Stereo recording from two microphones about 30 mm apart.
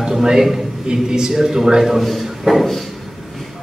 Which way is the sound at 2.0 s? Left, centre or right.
Centre.